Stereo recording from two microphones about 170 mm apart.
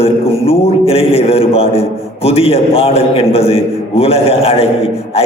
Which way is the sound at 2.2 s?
35° left (ahead or behind).